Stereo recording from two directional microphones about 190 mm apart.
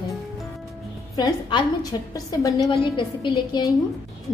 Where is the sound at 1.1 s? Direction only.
20° left (ahead or behind).